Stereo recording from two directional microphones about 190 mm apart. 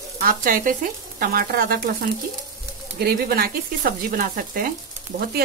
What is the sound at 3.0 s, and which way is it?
Speech, 55° right (ahead or behind).